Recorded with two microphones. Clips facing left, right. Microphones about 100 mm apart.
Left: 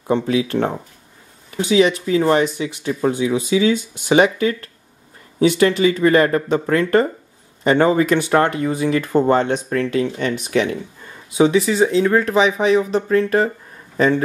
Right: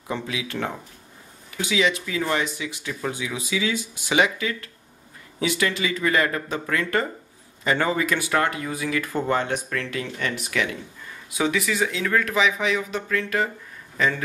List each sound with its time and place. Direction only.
0.1 s a man's voice: 35° left (ahead or behind)